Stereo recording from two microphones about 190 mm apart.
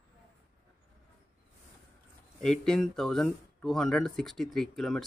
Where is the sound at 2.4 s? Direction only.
5° left (ahead or behind).